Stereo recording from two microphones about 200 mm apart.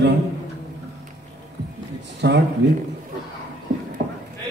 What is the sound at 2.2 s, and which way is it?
Speech, 60° right (ahead or behind).